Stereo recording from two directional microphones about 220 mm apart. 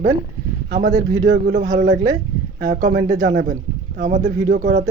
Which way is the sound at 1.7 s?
35° right (ahead or behind).